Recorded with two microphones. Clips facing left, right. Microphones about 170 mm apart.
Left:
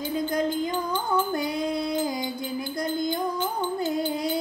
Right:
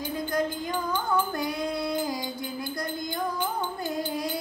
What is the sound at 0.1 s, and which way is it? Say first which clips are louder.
Music: left 3 dB; 20° left (ahead or behind).